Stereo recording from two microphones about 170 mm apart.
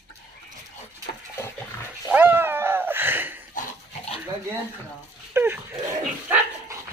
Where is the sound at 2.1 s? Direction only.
10° right (ahead or behind).